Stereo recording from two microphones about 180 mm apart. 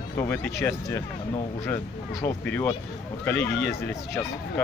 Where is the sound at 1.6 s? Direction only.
15° left (ahead or behind).